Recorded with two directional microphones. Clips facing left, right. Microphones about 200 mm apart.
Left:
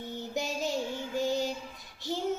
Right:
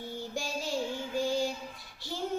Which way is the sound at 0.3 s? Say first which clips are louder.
Left 2 dB; 20° left (ahead or behind).